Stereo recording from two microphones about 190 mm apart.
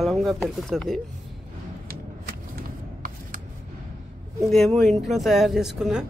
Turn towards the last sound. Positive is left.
turn(degrees=-5)  # may be behind; listen again after turning